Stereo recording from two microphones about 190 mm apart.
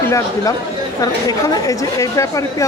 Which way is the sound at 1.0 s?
20° left (ahead or behind).